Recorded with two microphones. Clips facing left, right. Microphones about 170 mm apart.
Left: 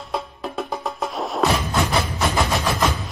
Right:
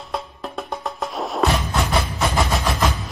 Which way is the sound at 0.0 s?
Centre (ahead or behind).